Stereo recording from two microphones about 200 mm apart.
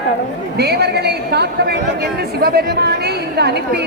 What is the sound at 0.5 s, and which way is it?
A woman's voice, 55° right (ahead or behind).